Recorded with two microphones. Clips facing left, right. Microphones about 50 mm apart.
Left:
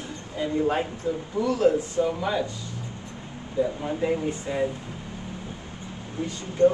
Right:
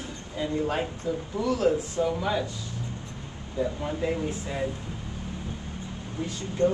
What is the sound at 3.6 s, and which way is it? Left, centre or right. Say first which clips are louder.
Speech: left 3 dB; centre.